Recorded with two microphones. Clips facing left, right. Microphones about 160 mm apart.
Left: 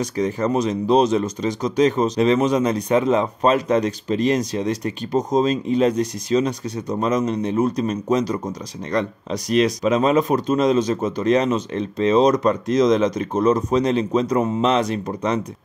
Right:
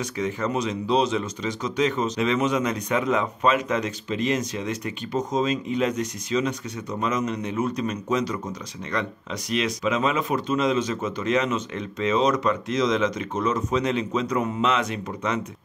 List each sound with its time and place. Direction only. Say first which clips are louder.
0.0 s speech: left 5 dB; 40° left (ahead or behind)